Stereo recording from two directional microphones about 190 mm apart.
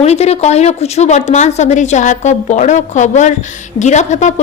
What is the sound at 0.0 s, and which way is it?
A woman's voice, 35° left (ahead or behind).